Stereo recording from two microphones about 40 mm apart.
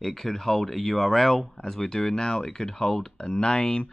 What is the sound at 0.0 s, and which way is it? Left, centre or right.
Speech, centre.